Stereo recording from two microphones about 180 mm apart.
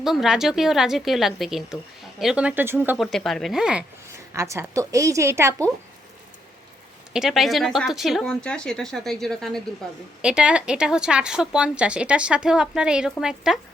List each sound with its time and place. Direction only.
0.0 s a woman's voice: centre (ahead or behind)
3.0 s a woman's voice: centre (ahead or behind)
4.4 s a woman's voice: 15° right (ahead or behind)
7.1 s a woman's voice: centre (ahead or behind)